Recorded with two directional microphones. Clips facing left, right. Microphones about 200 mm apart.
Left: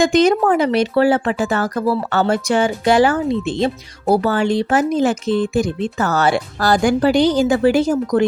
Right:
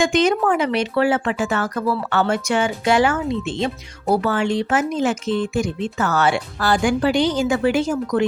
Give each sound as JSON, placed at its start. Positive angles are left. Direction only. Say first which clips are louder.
{"t": 0.0, "sound": "speech", "louder": "left 4 dB", "side_deg": 35}